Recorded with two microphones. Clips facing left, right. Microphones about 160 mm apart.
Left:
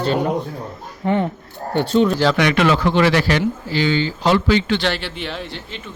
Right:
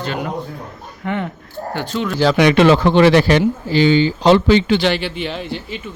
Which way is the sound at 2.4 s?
20° right (ahead or behind).